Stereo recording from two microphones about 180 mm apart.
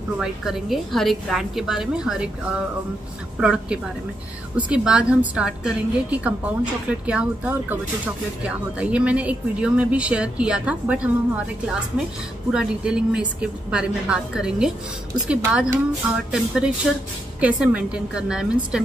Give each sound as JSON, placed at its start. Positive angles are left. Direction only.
{"t": 0.2, "sound": "a woman's voice", "side_deg": 0}
{"t": 3.3, "sound": "a woman's voice", "side_deg": -5}